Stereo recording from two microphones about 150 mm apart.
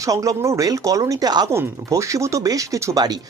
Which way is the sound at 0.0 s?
20° right (ahead or behind).